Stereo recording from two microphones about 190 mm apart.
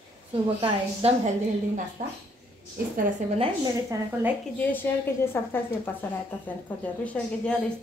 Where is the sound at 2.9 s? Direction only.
45° right (ahead or behind).